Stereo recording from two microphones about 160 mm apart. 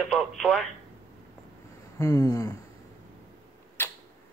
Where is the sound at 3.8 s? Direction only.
15° left (ahead or behind).